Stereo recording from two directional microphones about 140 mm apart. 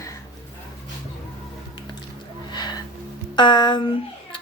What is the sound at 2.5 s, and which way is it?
Music, 30° left (ahead or behind).